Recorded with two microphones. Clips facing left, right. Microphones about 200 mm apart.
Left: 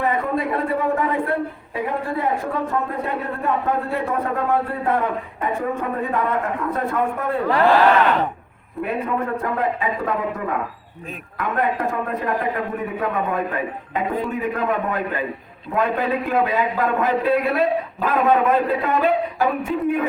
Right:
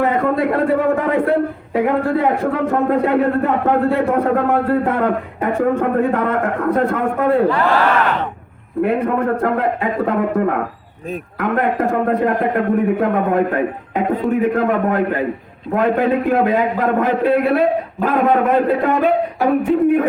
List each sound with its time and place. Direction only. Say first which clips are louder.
0.0 s a man's voice: right 5 dB; 70° right (ahead or behind)
1.7 s a man's voice: right 9 dB; 65° right (ahead or behind)
8.8 s a man's voice: right 7 dB; 60° right (ahead or behind)